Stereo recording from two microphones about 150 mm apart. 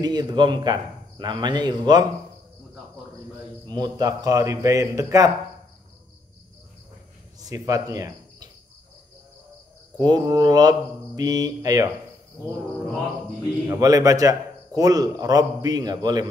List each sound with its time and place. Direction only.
0.0 s a man's voice: 30° right (ahead or behind)
3.6 s a man's voice: 25° right (ahead or behind)
7.3 s speech: 25° right (ahead or behind)
9.9 s a man's voice: 25° right (ahead or behind)
13.7 s a man's voice: 25° right (ahead or behind)